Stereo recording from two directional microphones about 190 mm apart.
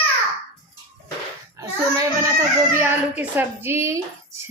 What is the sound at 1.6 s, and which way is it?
A child's voice, 15° right (ahead or behind).